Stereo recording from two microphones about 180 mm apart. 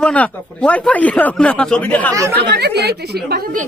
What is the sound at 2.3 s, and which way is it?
Speech, 65° right (ahead or behind).